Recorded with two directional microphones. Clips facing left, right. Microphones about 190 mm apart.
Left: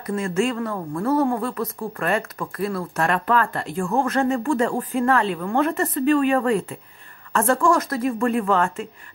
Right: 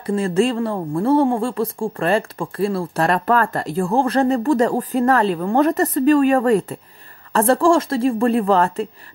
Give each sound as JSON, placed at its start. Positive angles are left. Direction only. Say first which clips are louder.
{"t": 0.0, "sound": "a woman's voice", "louder": "right 5 dB", "side_deg": -30}